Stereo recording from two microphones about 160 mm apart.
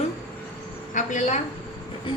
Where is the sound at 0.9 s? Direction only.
50° left (ahead or behind).